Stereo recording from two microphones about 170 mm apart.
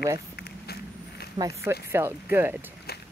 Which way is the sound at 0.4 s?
70° left (ahead or behind).